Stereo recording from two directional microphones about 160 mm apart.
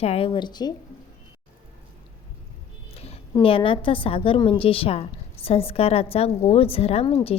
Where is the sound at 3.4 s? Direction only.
35° left (ahead or behind).